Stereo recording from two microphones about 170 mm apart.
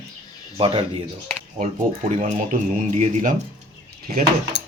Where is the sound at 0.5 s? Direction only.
35° right (ahead or behind).